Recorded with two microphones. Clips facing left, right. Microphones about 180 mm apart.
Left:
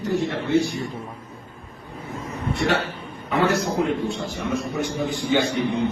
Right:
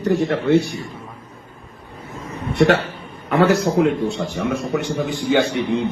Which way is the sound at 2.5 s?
70° right (ahead or behind).